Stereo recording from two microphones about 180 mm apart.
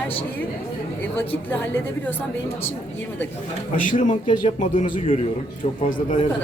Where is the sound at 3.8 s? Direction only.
45° left (ahead or behind).